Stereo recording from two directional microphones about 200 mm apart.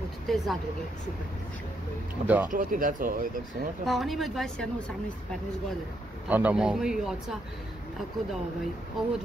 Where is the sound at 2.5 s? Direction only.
40° right (ahead or behind).